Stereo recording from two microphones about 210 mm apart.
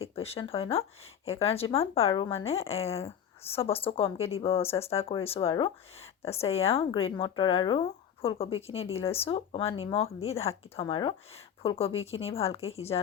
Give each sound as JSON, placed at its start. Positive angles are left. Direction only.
{"t": 0.0, "sound": "speech", "side_deg": 30}